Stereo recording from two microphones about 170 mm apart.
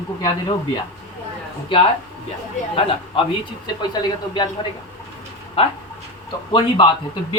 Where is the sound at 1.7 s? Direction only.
30° left (ahead or behind).